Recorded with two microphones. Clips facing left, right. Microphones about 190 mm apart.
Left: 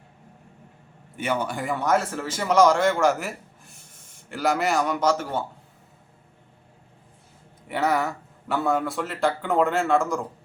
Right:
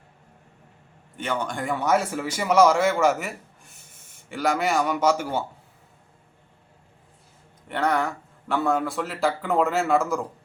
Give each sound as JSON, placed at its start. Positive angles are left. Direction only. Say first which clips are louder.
{"t": 1.1, "sound": "a man's voice", "louder": "left 2 dB", "side_deg": 10}
{"t": 7.7, "sound": "a man's voice", "louder": "even", "side_deg": 5}